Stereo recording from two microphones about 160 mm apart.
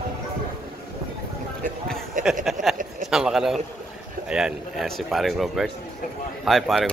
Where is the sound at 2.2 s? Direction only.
55° right (ahead or behind).